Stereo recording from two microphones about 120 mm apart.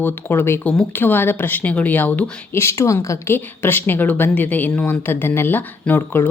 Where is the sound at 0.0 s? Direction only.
20° left (ahead or behind).